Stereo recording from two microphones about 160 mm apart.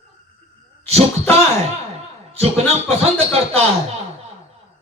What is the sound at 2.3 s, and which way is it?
Speech, 40° right (ahead or behind).